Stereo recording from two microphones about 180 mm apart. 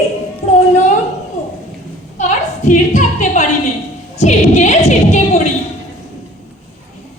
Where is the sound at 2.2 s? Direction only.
45° left (ahead or behind).